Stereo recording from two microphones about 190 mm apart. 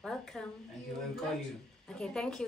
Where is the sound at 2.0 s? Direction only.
5° left (ahead or behind).